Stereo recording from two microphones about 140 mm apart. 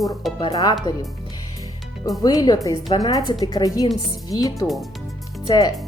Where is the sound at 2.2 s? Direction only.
30° left (ahead or behind).